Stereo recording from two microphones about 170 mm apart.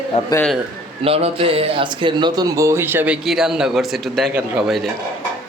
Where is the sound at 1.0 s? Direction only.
35° right (ahead or behind); by 4.9 s 5° right (ahead or behind).